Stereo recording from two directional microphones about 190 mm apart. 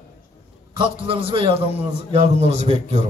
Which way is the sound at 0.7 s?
25° right (ahead or behind).